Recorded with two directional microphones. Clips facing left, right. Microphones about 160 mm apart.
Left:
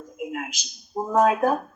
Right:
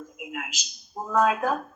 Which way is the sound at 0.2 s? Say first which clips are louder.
Left 7 dB; 35° left (ahead or behind).